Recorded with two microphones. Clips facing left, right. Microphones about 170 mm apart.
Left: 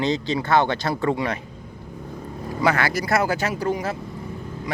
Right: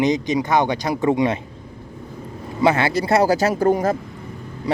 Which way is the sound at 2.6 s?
25° right (ahead or behind).